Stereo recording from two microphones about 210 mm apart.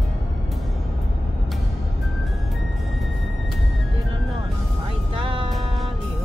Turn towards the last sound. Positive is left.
turn(degrees=-25)  # may be behind; listen again after turning